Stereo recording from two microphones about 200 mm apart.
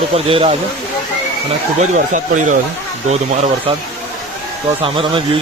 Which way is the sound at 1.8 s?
40° right (ahead or behind).